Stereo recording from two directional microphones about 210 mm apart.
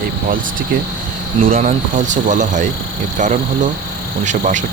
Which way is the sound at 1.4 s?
40° right (ahead or behind).